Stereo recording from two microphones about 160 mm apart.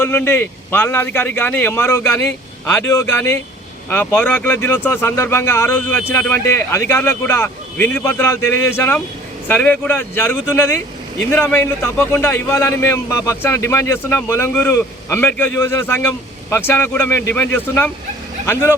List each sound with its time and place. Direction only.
0.0 s a man's voice: 15° left (ahead or behind)